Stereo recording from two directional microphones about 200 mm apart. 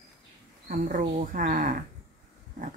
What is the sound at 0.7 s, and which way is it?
Speech, 45° right (ahead or behind).